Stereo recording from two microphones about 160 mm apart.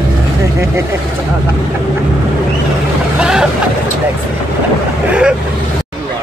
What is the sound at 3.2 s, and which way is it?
Speech, 5° right (ahead or behind).